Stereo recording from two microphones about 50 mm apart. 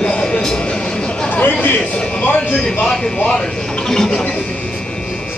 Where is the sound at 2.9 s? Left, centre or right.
Centre.